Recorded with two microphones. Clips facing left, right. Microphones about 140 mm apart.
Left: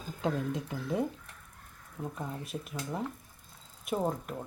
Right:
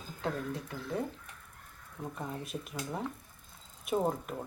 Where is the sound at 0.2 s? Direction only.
20° left (ahead or behind).